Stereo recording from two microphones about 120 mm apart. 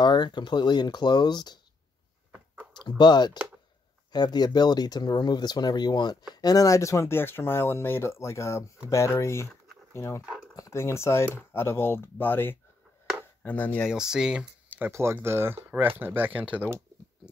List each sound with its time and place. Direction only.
0.0 s speech: 40° left (ahead or behind)
2.7 s speech: 35° left (ahead or behind)
10.2 s speech: 5° right (ahead or behind)
10.5 s speech: 25° left (ahead or behind)
13.4 s chopping: 15° left (ahead or behind)
13.8 s speech: 5° right (ahead or behind)